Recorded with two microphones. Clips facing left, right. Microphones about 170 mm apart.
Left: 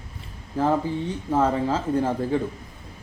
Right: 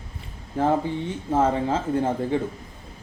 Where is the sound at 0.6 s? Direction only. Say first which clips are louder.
Even; 30° right (ahead or behind).